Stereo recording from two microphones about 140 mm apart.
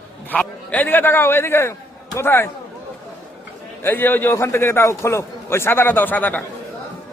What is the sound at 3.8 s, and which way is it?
A man's voice, 15° left (ahead or behind).